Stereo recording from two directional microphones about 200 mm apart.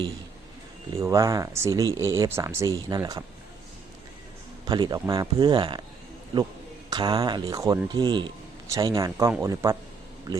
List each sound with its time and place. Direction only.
1.0 s speech: 15° right (ahead or behind)
4.6 s a man's voice: 20° right (ahead or behind)
6.9 s a man's voice: 20° right (ahead or behind)